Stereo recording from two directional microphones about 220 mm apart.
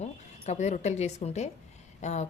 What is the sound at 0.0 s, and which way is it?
A woman's voice, 30° left (ahead or behind).